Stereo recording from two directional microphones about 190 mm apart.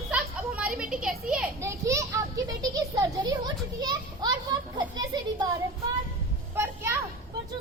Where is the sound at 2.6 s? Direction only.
20° right (ahead or behind).